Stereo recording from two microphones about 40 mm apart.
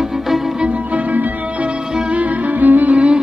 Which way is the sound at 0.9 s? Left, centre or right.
Right.